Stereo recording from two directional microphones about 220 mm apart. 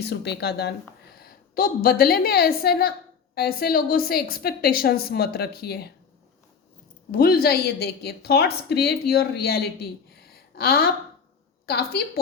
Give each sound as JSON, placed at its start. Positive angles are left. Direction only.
{"t": 0.0, "sound": "a woman's voice", "side_deg": 50}
{"t": 7.1, "sound": "a woman's voice", "side_deg": 40}